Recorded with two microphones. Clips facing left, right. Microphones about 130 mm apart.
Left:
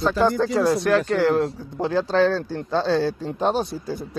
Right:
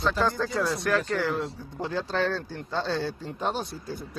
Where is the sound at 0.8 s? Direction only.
30° left (ahead or behind).